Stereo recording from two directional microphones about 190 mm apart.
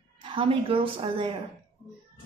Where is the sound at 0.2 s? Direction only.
25° right (ahead or behind).